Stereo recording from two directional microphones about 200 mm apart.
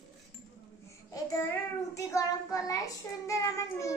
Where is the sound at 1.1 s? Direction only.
15° left (ahead or behind).